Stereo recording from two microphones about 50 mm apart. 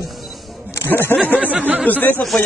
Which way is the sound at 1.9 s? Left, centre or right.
Left.